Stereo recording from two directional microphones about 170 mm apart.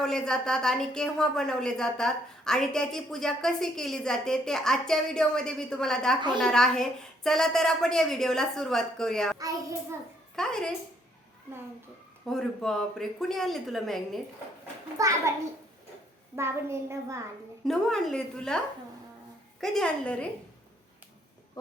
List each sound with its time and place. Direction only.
0.0 s a woman's voice: 5° left (ahead or behind)
12.3 s a woman's voice: centre (ahead or behind)
14.9 s a child's voice: 20° right (ahead or behind)
16.3 s a child's voice: 15° right (ahead or behind)
17.7 s a woman's voice: centre (ahead or behind)
19.6 s a woman's voice: 5° left (ahead or behind)